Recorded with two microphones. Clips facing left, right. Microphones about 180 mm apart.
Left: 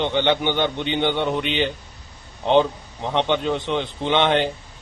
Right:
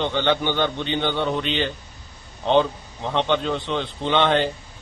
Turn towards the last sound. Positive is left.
turn(degrees=15)  # may be behind; listen again after turning